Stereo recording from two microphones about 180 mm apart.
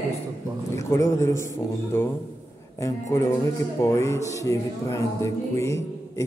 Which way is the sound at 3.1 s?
15° left (ahead or behind).